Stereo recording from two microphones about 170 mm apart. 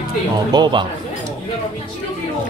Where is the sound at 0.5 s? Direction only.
25° right (ahead or behind).